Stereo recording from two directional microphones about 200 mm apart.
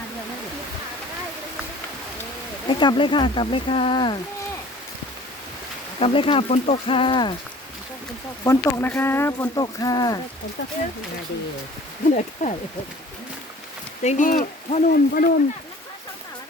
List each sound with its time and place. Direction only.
2.6 s speech: 25° left (ahead or behind)
6.0 s speech: 25° left (ahead or behind)
8.4 s speech: 10° left (ahead or behind)
12.1 s speech: 35° left (ahead or behind)
14.0 s speech: 35° left (ahead or behind)